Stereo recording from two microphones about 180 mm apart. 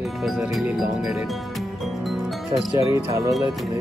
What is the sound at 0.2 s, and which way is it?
Speech, centre (ahead or behind).